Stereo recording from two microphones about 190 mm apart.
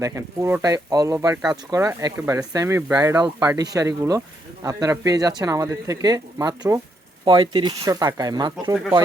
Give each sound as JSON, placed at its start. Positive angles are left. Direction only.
{"t": 0.0, "sound": "speech", "side_deg": -15}